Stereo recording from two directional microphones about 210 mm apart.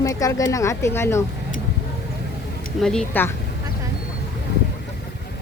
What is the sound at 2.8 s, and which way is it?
Speech, 5° left (ahead or behind).